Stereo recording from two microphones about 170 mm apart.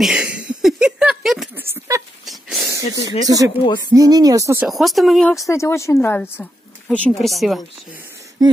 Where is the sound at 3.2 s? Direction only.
20° right (ahead or behind).